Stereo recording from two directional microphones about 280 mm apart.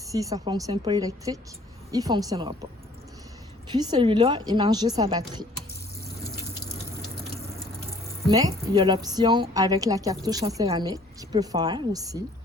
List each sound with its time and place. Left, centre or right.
0.1 s a woman's voice: centre
3.7 s a woman's voice: centre
8.3 s a woman's voice: centre